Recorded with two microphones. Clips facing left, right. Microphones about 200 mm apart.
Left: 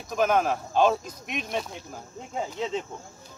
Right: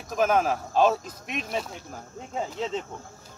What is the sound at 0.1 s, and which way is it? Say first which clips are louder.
Speech: even; centre (ahead or behind).